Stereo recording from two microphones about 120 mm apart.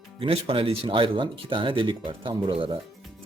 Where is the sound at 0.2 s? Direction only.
50° right (ahead or behind).